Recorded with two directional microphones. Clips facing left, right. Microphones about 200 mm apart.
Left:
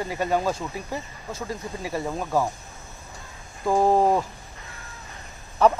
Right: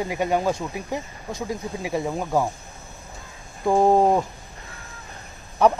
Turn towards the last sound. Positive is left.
turn(degrees=-15)  # may be behind; listen again after turning